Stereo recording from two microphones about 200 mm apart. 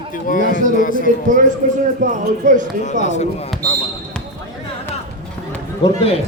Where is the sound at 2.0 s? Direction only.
40° right (ahead or behind).